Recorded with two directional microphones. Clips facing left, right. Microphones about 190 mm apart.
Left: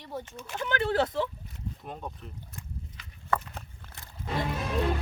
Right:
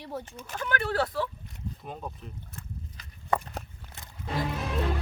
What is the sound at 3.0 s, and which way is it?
Walk, 40° right (ahead or behind).